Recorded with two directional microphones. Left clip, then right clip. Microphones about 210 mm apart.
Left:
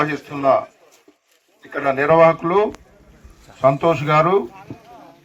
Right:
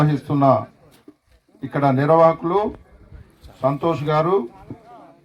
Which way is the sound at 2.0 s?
15° right (ahead or behind).